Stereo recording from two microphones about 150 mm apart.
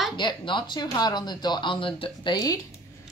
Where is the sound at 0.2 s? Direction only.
30° left (ahead or behind).